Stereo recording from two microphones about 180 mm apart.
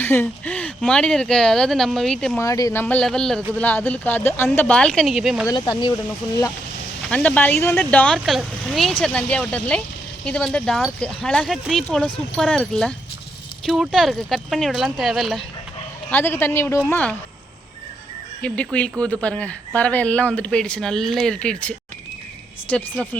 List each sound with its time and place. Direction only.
0.0 s speech: 10° left (ahead or behind)
2.4 s speech: 20° left (ahead or behind)
2.8 s speech: 5° left (ahead or behind)
5.5 s speech: 25° left (ahead or behind)
7.1 s speech: 5° left (ahead or behind)
16.0 s speech: 10° left (ahead or behind)
18.4 s speech: 5° left (ahead or behind)